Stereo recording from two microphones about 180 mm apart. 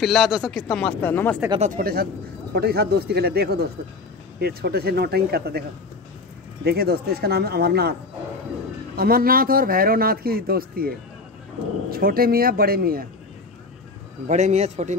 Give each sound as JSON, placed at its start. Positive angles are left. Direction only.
{"t": 0.0, "sound": "speech", "side_deg": 0}
{"t": 1.6, "sound": "a man's voice", "side_deg": -50}
{"t": 6.6, "sound": "a man's voice", "side_deg": -60}
{"t": 8.9, "sound": "a man's voice", "side_deg": -55}
{"t": 11.9, "sound": "a man's voice", "side_deg": -55}
{"t": 14.2, "sound": "a man's voice", "side_deg": -40}